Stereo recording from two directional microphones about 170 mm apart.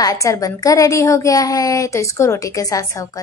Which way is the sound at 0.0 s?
20° left (ahead or behind).